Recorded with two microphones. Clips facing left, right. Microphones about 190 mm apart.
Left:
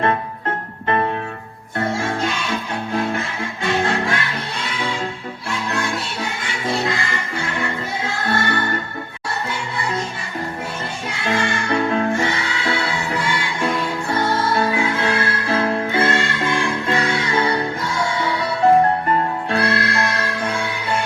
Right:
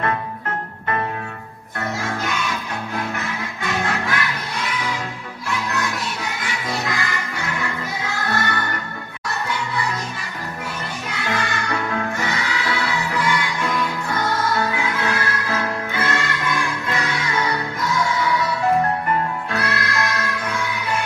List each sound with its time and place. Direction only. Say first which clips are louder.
1.8 s music: left 4 dB; 30° left (ahead or behind)
11.1 s music: left 4 dB; 25° left (ahead or behind)